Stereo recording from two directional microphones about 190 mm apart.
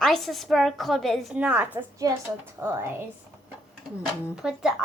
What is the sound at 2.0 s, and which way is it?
Speech, 20° right (ahead or behind).